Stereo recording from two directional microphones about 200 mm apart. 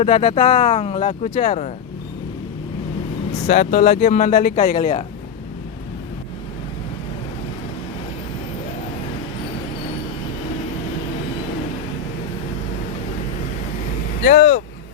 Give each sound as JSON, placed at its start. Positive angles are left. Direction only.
{"t": 0.0, "sound": "speech", "side_deg": 30}
{"t": 3.4, "sound": "speech", "side_deg": 30}
{"t": 14.3, "sound": "speech", "side_deg": 60}